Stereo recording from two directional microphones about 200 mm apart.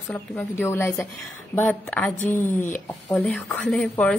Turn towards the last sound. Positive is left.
turn(degrees=5)  # may be behind; listen again after turning